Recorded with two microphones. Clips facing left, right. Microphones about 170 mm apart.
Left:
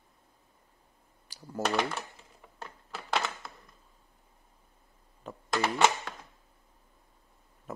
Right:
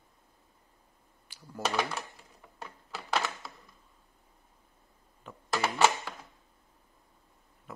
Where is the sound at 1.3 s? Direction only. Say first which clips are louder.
Left 5 dB; 40° left (ahead or behind).